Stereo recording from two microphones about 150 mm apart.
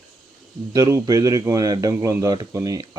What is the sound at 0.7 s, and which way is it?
Speech, 25° right (ahead or behind).